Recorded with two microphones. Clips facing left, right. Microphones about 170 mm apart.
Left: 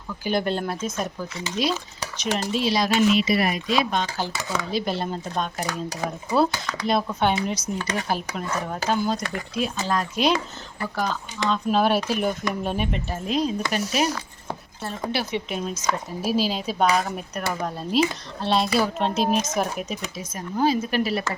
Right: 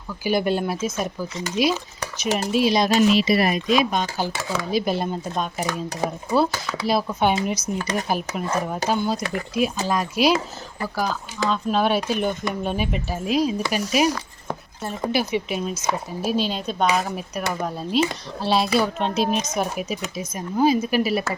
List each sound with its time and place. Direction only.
0.3 s speech: 10° right (ahead or behind)
2.9 s speech: 35° right (ahead or behind)
3.7 s speech: 15° right (ahead or behind)